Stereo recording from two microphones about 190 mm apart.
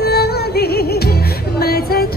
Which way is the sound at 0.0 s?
55° left (ahead or behind).